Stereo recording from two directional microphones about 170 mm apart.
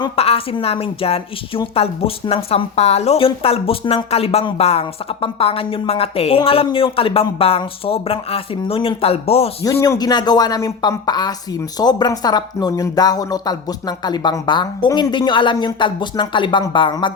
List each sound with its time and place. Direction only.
0.0 s a woman's voice: 35° left (ahead or behind)
9.8 s speech: 20° left (ahead or behind)